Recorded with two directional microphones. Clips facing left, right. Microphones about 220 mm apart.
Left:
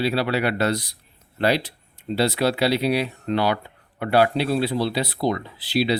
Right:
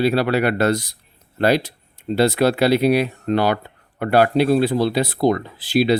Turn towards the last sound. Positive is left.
turn(degrees=-50)  # may be behind; listen again after turning